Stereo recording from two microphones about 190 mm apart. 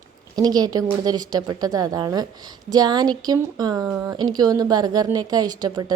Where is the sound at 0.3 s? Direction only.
20° right (ahead or behind).